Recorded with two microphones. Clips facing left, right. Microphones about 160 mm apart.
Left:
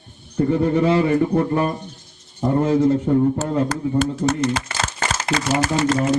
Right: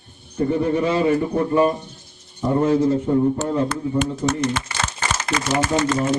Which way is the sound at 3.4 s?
35° left (ahead or behind).